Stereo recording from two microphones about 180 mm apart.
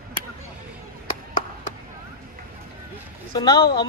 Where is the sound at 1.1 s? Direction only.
50° left (ahead or behind).